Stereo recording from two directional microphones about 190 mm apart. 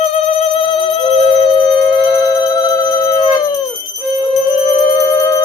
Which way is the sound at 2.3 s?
20° left (ahead or behind).